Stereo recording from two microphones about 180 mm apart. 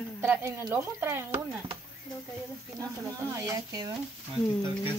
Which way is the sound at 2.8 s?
15° right (ahead or behind).